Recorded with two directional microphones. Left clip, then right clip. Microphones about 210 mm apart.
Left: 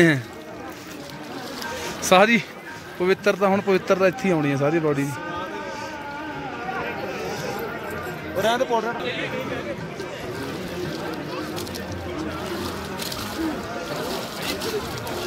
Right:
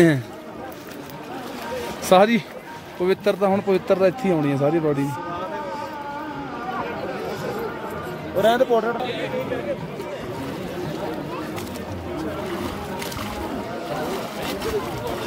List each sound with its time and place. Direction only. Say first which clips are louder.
2.0 s a man's voice: even; 5° right (ahead or behind)
8.4 s speech: right 4 dB; 50° right (ahead or behind)